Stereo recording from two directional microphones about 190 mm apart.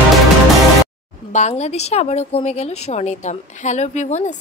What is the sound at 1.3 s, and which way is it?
Speech, 35° left (ahead or behind).